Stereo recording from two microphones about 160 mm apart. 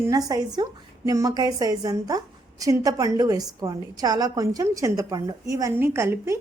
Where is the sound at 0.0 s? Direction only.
20° right (ahead or behind).